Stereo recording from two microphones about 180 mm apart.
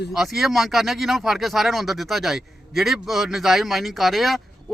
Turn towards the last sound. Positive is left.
turn(degrees=0)  # may be behind; listen again after turning